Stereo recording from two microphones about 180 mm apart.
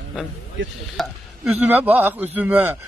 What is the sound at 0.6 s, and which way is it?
Chopping, 90° right.